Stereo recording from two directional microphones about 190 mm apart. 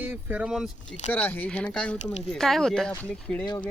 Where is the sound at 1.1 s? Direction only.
10° left (ahead or behind).